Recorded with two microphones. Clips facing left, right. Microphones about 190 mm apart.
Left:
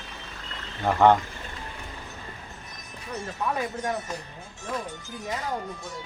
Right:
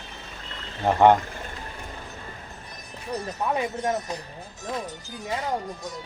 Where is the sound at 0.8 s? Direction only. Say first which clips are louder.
Right 2 dB; 20° right (ahead or behind).